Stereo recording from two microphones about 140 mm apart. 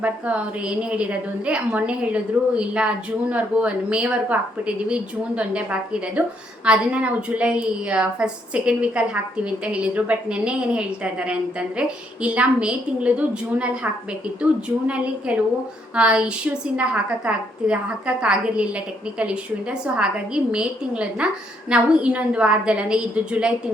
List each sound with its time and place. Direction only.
0.0 s a woman's voice: 10° right (ahead or behind)